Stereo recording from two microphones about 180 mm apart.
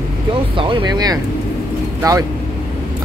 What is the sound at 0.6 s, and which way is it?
Speech, 25° right (ahead or behind).